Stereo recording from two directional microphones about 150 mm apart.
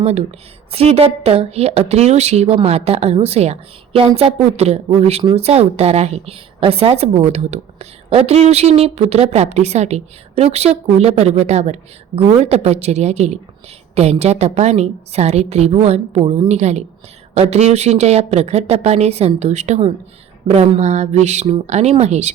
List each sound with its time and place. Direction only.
0.0 s a woman's voice: 45° right (ahead or behind)